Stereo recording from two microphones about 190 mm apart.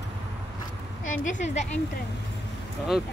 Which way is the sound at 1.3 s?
40° left (ahead or behind).